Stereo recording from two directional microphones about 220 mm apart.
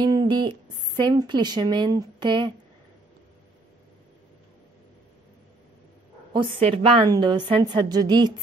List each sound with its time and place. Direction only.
0.0 s speech: 20° right (ahead or behind)
6.3 s a woman's voice: 20° right (ahead or behind)